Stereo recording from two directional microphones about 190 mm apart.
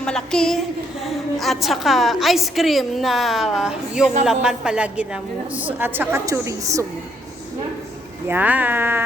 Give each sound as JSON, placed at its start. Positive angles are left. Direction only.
{"t": 0.0, "sound": "a woman's voice", "side_deg": 5}
{"t": 8.3, "sound": "a woman's voice", "side_deg": -10}